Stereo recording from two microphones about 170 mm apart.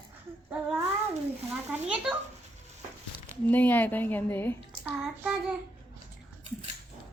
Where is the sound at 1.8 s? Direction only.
5° right (ahead or behind).